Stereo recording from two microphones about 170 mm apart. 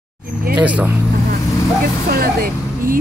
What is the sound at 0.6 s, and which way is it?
Speech, 10° right (ahead or behind).